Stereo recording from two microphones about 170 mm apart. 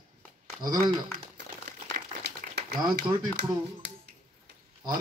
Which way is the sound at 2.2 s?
80° right.